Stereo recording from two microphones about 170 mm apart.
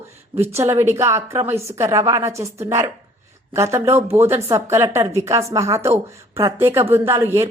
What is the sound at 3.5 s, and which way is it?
Speech, 15° right (ahead or behind).